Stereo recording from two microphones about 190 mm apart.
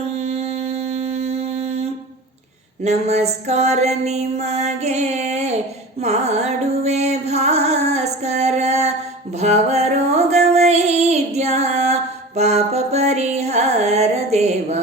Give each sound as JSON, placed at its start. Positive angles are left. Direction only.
{"t": 0.2, "sound": "mantra", "side_deg": -35}
{"t": 2.8, "sound": "music", "side_deg": -35}